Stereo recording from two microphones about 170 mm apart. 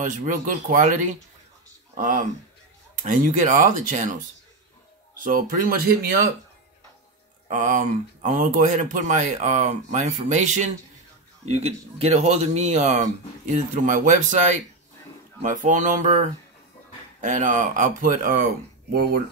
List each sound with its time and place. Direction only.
0.0 s speech: 50° right (ahead or behind)
7.4 s speech: 50° right (ahead or behind)
18.9 s speech: 70° right (ahead or behind)